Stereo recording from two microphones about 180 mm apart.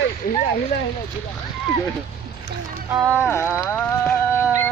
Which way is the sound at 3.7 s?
10° left (ahead or behind).